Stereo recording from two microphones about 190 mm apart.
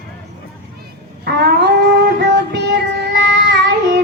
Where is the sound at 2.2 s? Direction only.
60° right (ahead or behind).